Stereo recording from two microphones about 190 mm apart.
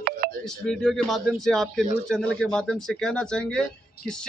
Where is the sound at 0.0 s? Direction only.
50° right (ahead or behind).